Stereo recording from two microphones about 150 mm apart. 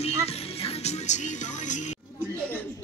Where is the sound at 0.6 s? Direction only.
50° left (ahead or behind).